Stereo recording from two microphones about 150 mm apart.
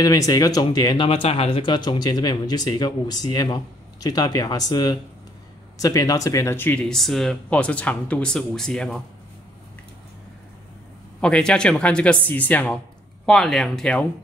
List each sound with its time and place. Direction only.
0.0 s speech: 25° left (ahead or behind)
1.0 s speech: 40° left (ahead or behind); by 9.0 s 5° left (ahead or behind)
11.1 s speech: 5° left (ahead or behind)